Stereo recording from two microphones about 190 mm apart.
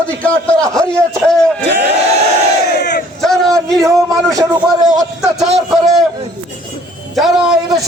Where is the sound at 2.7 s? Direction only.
55° left (ahead or behind).